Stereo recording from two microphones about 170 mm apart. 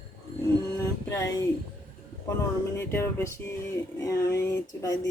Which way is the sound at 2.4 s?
15° left (ahead or behind).